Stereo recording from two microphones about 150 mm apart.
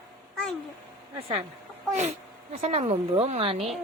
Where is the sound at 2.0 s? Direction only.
50° right (ahead or behind).